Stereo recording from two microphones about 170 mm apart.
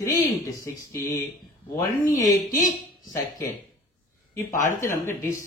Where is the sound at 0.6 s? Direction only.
20° left (ahead or behind).